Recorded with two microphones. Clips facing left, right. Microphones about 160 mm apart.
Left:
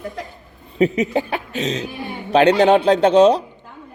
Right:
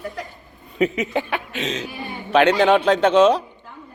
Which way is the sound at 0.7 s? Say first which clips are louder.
Left 3 dB; 35° left (ahead or behind).